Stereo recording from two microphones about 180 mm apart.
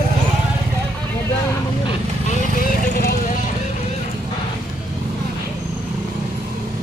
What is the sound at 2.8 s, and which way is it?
Vehicle, 50° left (ahead or behind).